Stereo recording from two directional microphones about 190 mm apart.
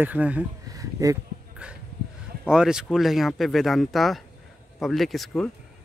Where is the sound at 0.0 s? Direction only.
10° right (ahead or behind).